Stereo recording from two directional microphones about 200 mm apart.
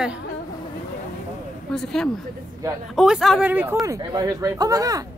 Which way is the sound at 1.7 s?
5° left (ahead or behind).